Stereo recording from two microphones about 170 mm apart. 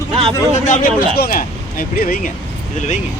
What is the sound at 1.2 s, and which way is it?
Speech, 60° left (ahead or behind).